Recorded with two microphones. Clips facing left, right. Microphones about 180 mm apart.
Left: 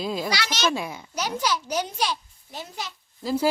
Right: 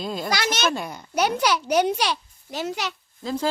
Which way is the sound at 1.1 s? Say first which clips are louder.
Right 6 dB; 65° right (ahead or behind).